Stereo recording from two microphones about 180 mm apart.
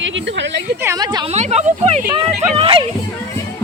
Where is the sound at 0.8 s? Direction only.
20° right (ahead or behind).